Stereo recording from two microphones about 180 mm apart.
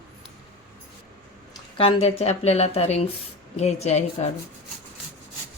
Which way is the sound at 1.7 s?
35° left (ahead or behind).